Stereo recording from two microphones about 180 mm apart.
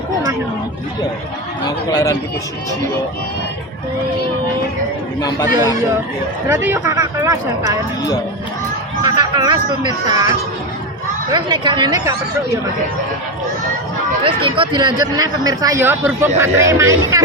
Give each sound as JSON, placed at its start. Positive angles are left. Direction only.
{"t": 1.6, "sound": "a man's voice", "side_deg": 20}
{"t": 6.5, "sound": "speech", "side_deg": -15}
{"t": 9.0, "sound": "speech", "side_deg": -25}
{"t": 14.3, "sound": "speech", "side_deg": -30}